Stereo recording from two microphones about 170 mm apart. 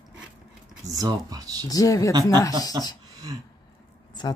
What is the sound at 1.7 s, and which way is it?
Speech, 20° left (ahead or behind).